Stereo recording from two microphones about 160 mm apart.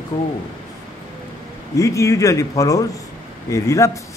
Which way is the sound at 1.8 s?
20° left (ahead or behind).